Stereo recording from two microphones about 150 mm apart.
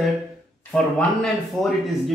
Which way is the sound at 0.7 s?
5° left (ahead or behind).